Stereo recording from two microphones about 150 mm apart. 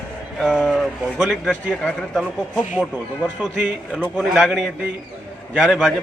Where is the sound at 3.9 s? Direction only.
5° right (ahead or behind).